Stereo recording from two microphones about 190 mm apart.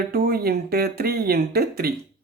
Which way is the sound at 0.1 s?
55° right (ahead or behind).